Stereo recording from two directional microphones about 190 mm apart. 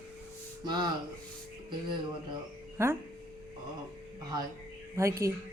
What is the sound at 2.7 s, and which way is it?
Speech, 15° right (ahead or behind).